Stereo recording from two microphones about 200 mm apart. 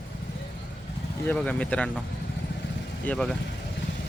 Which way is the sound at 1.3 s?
5° left (ahead or behind).